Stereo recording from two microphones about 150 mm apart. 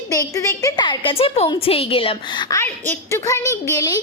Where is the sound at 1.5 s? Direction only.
40° left (ahead or behind).